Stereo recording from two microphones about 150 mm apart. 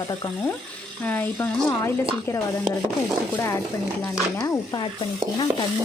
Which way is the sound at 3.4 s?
20° left (ahead or behind).